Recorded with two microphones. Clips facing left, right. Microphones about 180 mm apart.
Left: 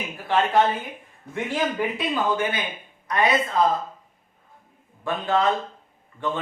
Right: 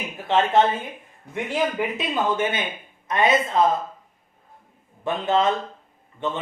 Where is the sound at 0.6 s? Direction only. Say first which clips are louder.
Right 1 dB; 25° right (ahead or behind).